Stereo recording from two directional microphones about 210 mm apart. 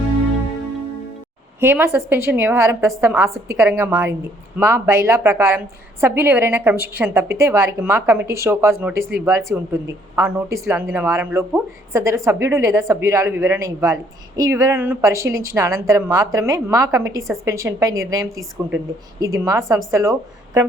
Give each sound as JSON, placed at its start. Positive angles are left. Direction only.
{"t": 1.6, "sound": "a woman's voice", "side_deg": -10}